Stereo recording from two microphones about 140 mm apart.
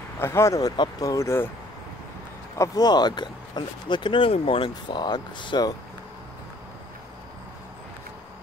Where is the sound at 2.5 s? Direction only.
25° left (ahead or behind).